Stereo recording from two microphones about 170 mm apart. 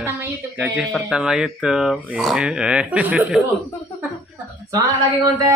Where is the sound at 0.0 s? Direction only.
10° right (ahead or behind).